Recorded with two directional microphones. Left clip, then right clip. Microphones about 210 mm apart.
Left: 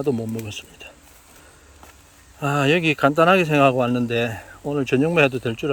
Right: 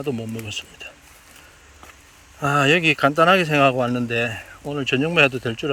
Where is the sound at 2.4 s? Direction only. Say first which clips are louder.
Right 2 dB; 15° left (ahead or behind).